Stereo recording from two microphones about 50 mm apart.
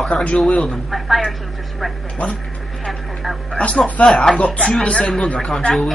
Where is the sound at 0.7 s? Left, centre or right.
Centre.